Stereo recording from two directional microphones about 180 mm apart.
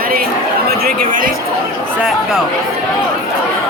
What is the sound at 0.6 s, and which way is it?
Chatter, 50° right (ahead or behind).